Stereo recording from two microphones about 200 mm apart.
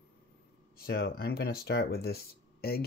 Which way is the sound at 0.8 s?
50° left (ahead or behind).